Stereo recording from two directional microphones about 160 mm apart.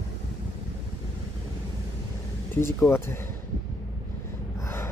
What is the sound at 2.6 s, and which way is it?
Speech, 15° left (ahead or behind).